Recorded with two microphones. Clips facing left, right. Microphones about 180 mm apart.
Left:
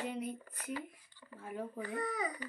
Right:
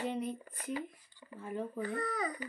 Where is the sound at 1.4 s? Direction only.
10° left (ahead or behind).